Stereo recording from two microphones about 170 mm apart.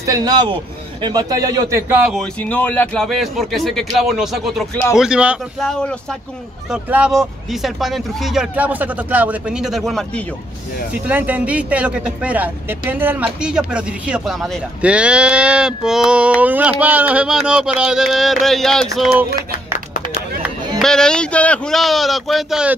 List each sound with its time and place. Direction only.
0.0 s a man's voice: 25° right (ahead or behind)
2.0 s speech: 5° left (ahead or behind)
20.8 s speech: 5° left (ahead or behind)